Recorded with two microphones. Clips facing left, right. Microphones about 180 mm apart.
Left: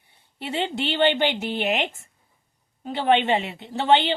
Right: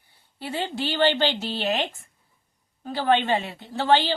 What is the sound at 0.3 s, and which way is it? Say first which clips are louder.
A woman's voice: left 2 dB; 25° left (ahead or behind).